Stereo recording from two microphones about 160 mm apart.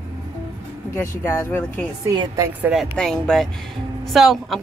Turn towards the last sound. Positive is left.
turn(degrees=0)  # may be behind; listen again after turning